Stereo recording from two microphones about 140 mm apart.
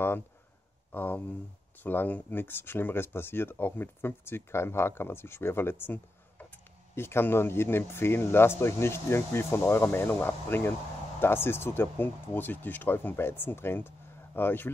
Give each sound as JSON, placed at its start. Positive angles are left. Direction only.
{"t": 0.9, "sound": "speech", "side_deg": 15}